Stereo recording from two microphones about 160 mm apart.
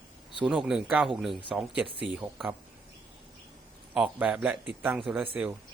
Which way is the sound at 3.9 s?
5° right (ahead or behind).